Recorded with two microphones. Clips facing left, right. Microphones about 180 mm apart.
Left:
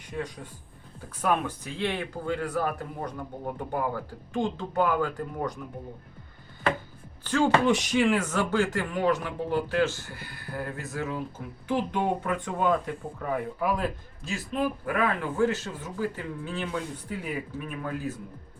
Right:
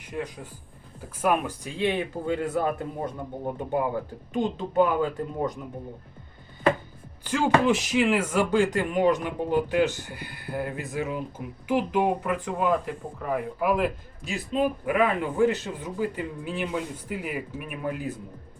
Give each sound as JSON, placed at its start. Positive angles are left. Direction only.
{"t": 0.1, "sound": "a man's voice", "side_deg": -5}
{"t": 7.3, "sound": "speech", "side_deg": -10}